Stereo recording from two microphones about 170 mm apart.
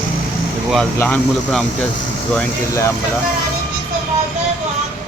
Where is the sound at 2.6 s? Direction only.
15° left (ahead or behind).